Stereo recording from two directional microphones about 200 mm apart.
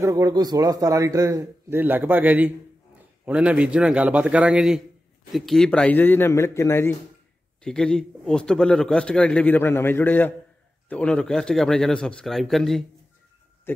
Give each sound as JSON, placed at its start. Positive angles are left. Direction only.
{"t": 0.0, "sound": "a man's voice", "side_deg": -15}